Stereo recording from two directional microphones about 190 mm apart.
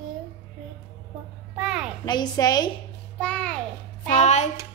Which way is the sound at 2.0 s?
20° left (ahead or behind).